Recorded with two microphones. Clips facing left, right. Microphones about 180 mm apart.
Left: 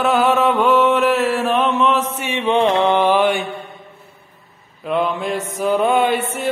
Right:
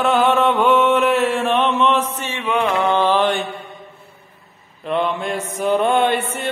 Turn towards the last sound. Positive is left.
turn(degrees=0)  # may be behind; listen again after turning